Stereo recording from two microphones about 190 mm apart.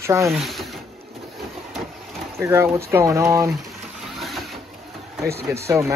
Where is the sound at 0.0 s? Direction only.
15° right (ahead or behind).